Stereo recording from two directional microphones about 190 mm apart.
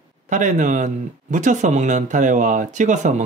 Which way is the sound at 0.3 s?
40° right (ahead or behind).